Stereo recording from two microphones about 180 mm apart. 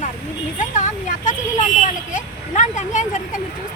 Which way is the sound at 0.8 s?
45° left (ahead or behind).